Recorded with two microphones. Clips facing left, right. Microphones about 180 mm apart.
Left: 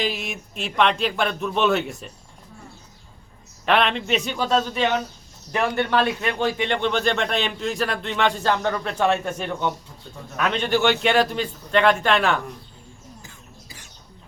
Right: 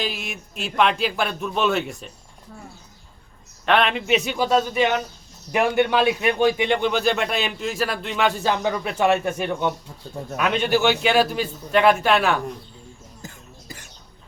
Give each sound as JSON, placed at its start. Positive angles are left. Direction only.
{"t": 0.0, "sound": "a man's voice", "side_deg": 0}
{"t": 3.7, "sound": "a man's voice", "side_deg": 0}
{"t": 13.2, "sound": "music", "side_deg": -45}